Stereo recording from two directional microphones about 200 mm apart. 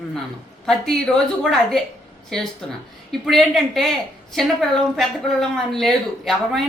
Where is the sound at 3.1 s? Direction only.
Centre (ahead or behind).